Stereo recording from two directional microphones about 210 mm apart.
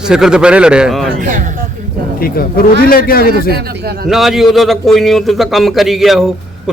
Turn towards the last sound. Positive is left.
turn(degrees=0)  # may be behind; listen again after turning